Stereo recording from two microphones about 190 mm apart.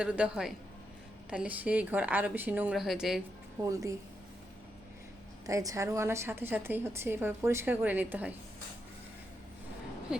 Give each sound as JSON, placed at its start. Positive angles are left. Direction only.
{"t": 0.0, "sound": "a man's voice", "side_deg": -5}
{"t": 3.6, "sound": "a woman's voice", "side_deg": -15}
{"t": 5.5, "sound": "a woman's voice", "side_deg": -15}